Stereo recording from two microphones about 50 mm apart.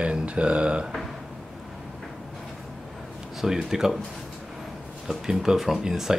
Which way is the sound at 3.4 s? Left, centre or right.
Centre.